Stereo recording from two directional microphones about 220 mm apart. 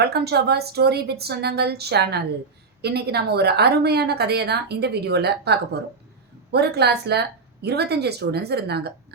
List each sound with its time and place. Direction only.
0.0 s a woman's voice: 45° right (ahead or behind)